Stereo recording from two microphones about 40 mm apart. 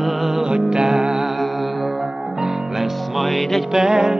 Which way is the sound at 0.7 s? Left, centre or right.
Centre.